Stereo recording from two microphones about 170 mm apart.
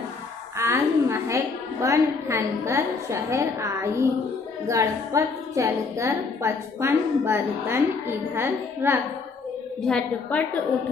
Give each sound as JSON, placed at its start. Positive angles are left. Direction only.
{"t": 0.6, "sound": "a woman's voice", "side_deg": -15}
{"t": 9.8, "sound": "a woman's voice", "side_deg": 5}